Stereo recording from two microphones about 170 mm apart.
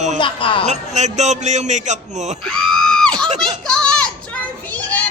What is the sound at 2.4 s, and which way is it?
Screaming, 5° left (ahead or behind).